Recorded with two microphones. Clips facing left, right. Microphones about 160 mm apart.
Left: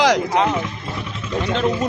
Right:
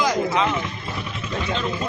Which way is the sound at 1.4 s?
65° left (ahead or behind).